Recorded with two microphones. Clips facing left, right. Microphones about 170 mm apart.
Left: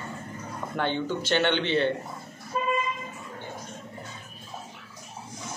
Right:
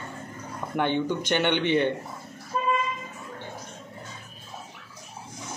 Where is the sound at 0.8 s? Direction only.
15° right (ahead or behind).